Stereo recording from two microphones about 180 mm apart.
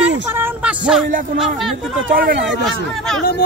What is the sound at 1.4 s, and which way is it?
Speech, centre (ahead or behind).